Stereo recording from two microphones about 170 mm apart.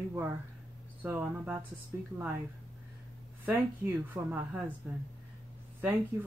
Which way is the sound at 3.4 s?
10° right (ahead or behind).